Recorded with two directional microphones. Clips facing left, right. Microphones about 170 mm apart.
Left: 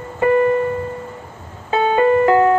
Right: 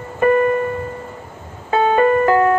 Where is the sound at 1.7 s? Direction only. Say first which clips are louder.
Even; 20° left (ahead or behind).